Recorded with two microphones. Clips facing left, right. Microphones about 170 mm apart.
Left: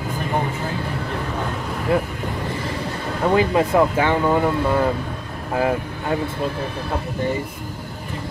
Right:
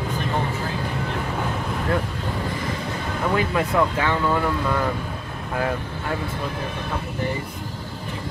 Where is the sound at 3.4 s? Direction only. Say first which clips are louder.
Left 5 dB; 25° left (ahead or behind).